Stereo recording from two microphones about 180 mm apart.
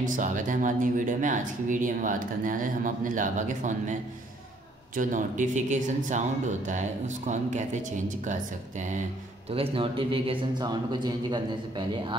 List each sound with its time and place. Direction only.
0.0 s speech: 45° right (ahead or behind)
4.9 s speech: 45° right (ahead or behind)
9.5 s a man's voice: 30° right (ahead or behind)